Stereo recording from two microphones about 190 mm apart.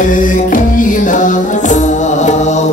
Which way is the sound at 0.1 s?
45° left (ahead or behind).